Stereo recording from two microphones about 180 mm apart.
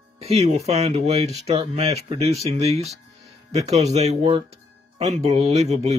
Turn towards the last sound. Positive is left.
turn(degrees=-35)  # may be behind; listen again after turning